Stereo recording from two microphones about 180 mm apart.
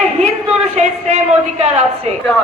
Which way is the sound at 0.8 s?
40° right (ahead or behind).